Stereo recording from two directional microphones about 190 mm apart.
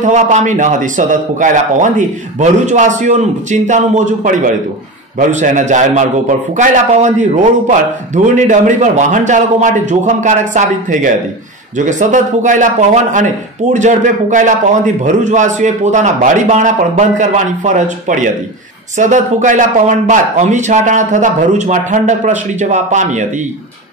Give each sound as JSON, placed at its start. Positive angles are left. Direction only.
{"t": 0.0, "sound": "a man's voice", "side_deg": -40}